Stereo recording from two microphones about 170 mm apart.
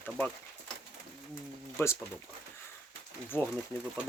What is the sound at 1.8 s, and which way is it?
Speech, 15° left (ahead or behind).